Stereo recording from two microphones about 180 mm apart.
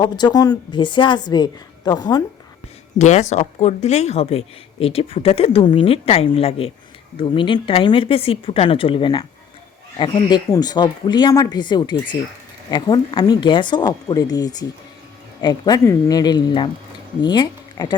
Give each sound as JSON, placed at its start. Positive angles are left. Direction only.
{"t": 0.0, "sound": "a woman's voice", "side_deg": 25}
{"t": 3.0, "sound": "a woman's voice", "side_deg": 40}